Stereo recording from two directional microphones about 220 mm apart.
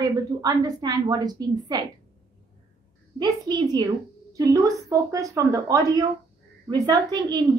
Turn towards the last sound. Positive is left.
turn(degrees=-20)  # may be behind; listen again after turning